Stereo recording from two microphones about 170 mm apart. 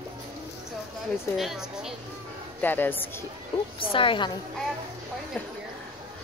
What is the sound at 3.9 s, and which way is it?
Speech, 30° left (ahead or behind).